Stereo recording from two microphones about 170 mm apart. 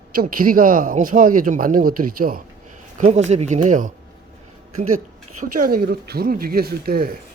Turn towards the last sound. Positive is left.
turn(degrees=-65)  # may be behind; listen again after turning